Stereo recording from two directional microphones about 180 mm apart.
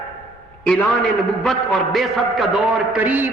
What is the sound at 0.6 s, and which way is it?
A man's voice, 10° left (ahead or behind).